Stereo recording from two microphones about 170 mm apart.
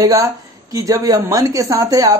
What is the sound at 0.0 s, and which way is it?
A woman's voice, 20° right (ahead or behind).